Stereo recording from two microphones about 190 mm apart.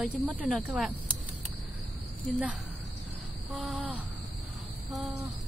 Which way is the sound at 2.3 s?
5° right (ahead or behind).